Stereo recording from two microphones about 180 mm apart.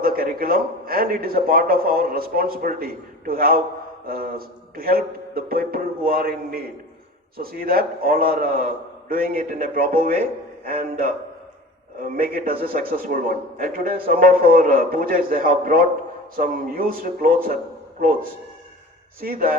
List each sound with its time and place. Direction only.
0.0 s a man's voice: 55° right (ahead or behind)